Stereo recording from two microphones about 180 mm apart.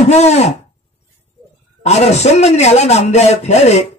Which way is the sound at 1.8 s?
40° left (ahead or behind).